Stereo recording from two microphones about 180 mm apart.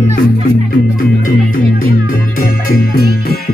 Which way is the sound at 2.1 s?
50° left (ahead or behind).